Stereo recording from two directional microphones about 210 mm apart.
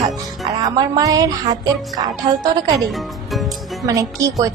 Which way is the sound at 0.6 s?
20° right (ahead or behind).